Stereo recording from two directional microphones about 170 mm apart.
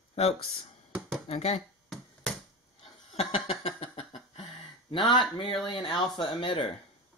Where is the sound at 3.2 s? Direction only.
40° left (ahead or behind).